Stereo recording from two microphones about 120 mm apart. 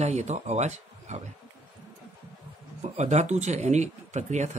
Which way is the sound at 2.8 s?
70° right (ahead or behind).